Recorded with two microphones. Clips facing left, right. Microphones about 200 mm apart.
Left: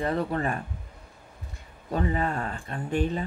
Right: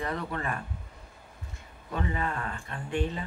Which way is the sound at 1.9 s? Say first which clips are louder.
Left 5 dB; 35° left (ahead or behind).